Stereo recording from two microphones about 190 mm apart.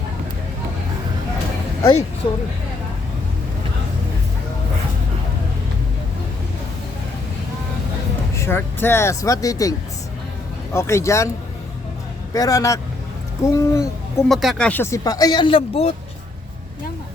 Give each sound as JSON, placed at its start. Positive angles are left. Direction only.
{"t": 1.8, "sound": "speech", "side_deg": 30}
{"t": 8.4, "sound": "speech", "side_deg": 10}
{"t": 12.3, "sound": "speech", "side_deg": 20}
{"t": 14.3, "sound": "speech", "side_deg": 0}